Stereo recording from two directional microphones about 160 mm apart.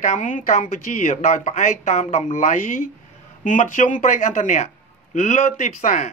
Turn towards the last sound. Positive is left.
turn(degrees=55)  # may be behind; listen again after turning